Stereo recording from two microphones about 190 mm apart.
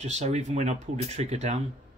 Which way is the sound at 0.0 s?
35° right (ahead or behind).